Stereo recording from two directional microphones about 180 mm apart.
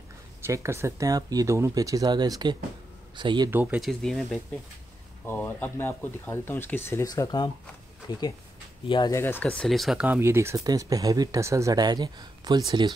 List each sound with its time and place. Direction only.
0.5 s speech: 15° right (ahead or behind)
3.4 s speech: 10° right (ahead or behind)
5.2 s speech: 10° left (ahead or behind)
8.8 s speech: 25° left (ahead or behind)
9.2 s speech: 10° left (ahead or behind); by 12.9 s 25° right (ahead or behind)